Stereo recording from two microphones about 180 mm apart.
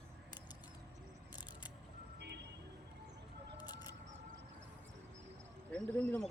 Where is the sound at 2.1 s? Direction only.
70° right (ahead or behind).